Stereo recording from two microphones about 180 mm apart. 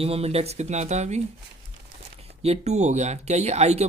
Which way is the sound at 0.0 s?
35° right (ahead or behind).